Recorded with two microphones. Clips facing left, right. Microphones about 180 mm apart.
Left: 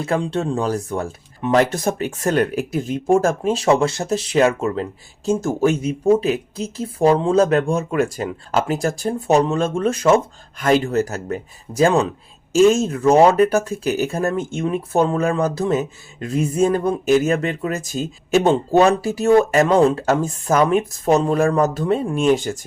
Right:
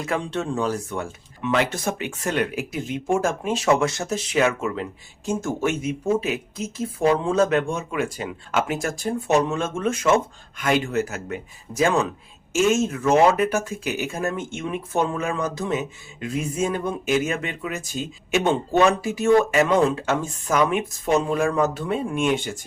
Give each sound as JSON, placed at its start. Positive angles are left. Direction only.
{"t": 0.0, "sound": "speech", "side_deg": 30}